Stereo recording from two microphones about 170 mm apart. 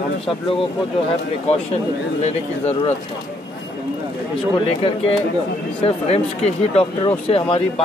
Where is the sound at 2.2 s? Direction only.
40° left (ahead or behind).